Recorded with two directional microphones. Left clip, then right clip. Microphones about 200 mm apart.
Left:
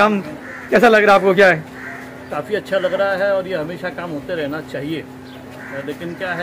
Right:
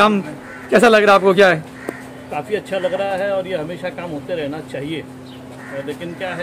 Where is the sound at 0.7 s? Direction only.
15° right (ahead or behind).